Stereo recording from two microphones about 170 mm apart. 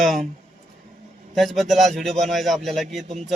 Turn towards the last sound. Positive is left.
turn(degrees=-40)  # may be behind; listen again after turning